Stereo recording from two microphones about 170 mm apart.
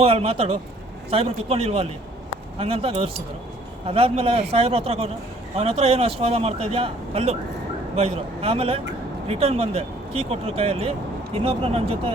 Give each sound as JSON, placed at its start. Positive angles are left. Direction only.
{"t": 0.0, "sound": "a man's voice", "side_deg": -35}